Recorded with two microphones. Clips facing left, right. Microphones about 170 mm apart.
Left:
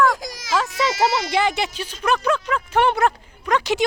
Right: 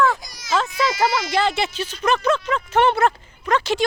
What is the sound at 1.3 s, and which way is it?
Speech, 15° left (ahead or behind).